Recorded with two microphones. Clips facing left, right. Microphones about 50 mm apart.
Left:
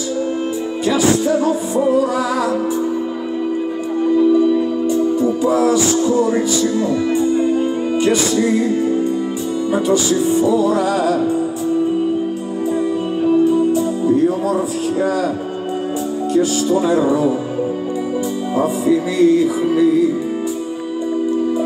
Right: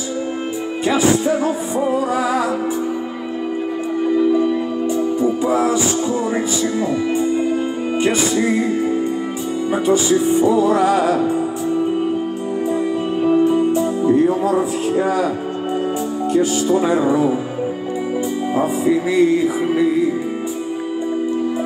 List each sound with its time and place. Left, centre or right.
0.8 s music: centre
4.4 s music: centre
10.2 s music: right
13.2 s music: right
16.3 s music: centre
18.5 s music: centre